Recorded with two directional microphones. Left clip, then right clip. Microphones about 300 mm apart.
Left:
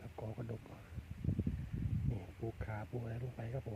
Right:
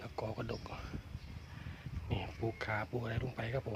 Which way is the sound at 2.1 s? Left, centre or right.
Centre.